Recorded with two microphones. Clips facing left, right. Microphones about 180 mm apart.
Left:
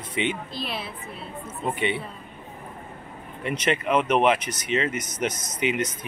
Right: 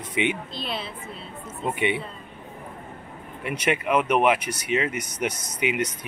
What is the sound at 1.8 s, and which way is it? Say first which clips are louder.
Speech: right 3 dB; 15° right (ahead or behind).